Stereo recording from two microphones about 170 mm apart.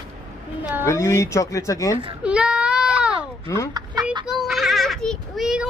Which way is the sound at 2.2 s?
5° right (ahead or behind).